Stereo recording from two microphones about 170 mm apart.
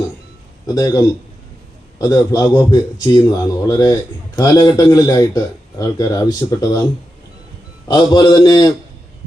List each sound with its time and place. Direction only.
0.7 s a man's voice: 20° left (ahead or behind)
7.9 s a man's voice: 25° left (ahead or behind)